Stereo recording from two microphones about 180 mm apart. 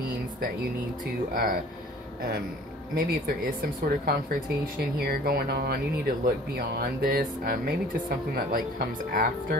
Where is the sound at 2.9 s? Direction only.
55° right (ahead or behind).